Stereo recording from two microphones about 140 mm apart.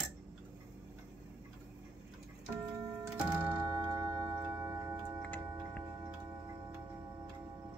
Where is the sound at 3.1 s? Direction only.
15° right (ahead or behind).